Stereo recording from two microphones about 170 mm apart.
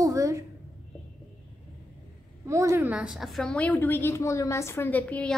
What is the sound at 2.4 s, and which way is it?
A woman's voice, 15° right (ahead or behind).